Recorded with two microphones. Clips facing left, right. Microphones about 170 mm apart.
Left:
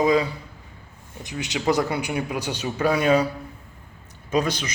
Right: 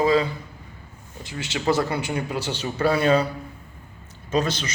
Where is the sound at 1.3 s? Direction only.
15° left (ahead or behind).